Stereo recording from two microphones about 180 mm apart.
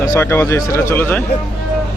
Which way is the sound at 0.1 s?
15° left (ahead or behind).